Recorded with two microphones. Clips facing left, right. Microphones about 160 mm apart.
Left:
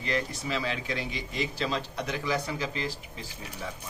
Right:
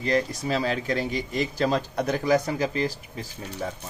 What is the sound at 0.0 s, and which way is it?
Speech, 40° right (ahead or behind).